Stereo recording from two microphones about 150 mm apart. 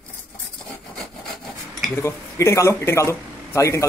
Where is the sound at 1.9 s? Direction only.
20° left (ahead or behind).